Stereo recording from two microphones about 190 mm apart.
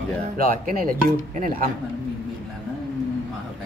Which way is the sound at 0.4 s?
50° right (ahead or behind).